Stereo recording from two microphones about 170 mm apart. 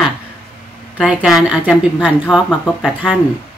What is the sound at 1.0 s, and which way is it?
A woman's voice, 5° right (ahead or behind).